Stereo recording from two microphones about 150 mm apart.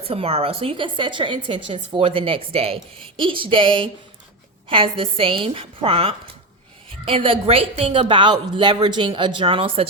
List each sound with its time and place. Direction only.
0.0 s speech: 40° right (ahead or behind)